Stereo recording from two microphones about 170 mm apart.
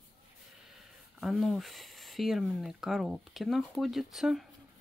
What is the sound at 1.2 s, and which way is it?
Speech, centre (ahead or behind).